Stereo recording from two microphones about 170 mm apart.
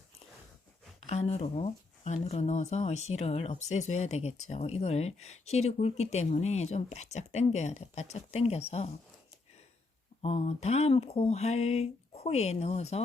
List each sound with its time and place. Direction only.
1.0 s speech: 40° left (ahead or behind)
10.2 s speech: 40° left (ahead or behind)